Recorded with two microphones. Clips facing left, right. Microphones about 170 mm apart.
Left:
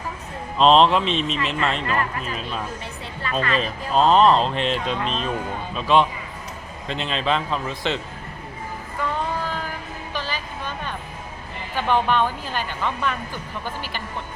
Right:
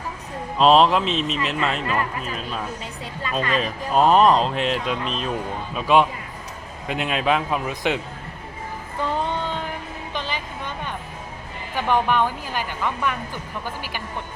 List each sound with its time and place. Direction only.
0.6 s speech: 5° right (ahead or behind)
3.5 s speech: 5° right (ahead or behind)
9.0 s music: 30° right (ahead or behind)
10.1 s music: 20° right (ahead or behind)
11.8 s speech: 10° right (ahead or behind)